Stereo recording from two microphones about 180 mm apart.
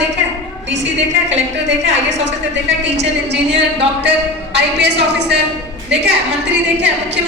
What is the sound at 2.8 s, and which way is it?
A woman's voice, 75° right (ahead or behind).